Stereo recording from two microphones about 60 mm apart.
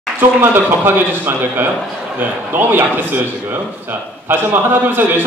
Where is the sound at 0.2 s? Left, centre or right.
Right.